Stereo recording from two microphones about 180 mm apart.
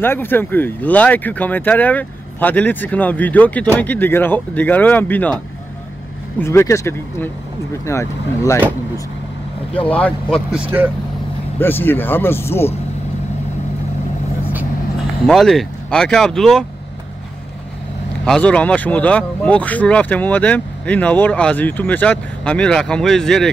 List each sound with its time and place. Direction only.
0.0 s speech: 10° left (ahead or behind)
6.4 s speech: 15° left (ahead or behind)
8.5 s speech: 15° right (ahead or behind)
9.8 s speech: 5° left (ahead or behind)
10.5 s speech: 10° right (ahead or behind)
11.6 s speech: 10° left (ahead or behind)
15.2 s speech: centre (ahead or behind)
18.2 s speech: 5° left (ahead or behind)